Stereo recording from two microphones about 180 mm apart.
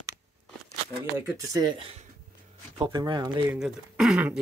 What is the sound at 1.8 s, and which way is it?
Speech, 35° right (ahead or behind).